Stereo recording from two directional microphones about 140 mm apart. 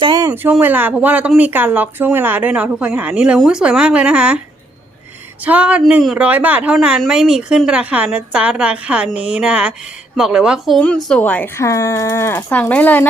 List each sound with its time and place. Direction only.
0.0 s a sound: 30° right (ahead or behind)
0.6 s speech: 10° right (ahead or behind)
5.5 s speech: 10° right (ahead or behind)
10.8 s speech: 5° left (ahead or behind)